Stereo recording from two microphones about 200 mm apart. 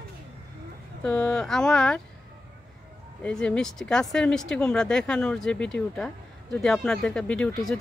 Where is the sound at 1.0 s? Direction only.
5° left (ahead or behind).